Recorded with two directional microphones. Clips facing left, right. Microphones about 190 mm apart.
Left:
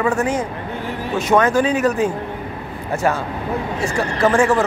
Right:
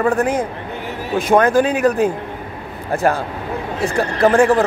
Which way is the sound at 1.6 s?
55° right (ahead or behind).